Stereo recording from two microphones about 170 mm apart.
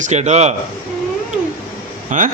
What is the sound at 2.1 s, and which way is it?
Speech, 50° right (ahead or behind).